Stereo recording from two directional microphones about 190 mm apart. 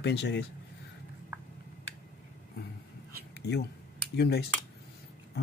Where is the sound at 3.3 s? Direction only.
60° left (ahead or behind).